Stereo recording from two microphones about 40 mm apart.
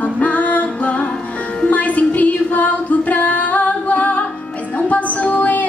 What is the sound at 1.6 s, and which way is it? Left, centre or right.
Female singing, left.